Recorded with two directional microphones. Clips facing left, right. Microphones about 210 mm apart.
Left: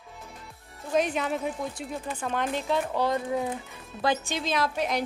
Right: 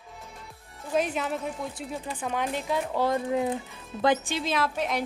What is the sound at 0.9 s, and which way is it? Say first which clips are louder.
A woman's voice: left 1 dB; 5° right (ahead or behind).